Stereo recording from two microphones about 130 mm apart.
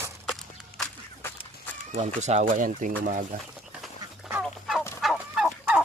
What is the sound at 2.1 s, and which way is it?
Speech, 65° right (ahead or behind).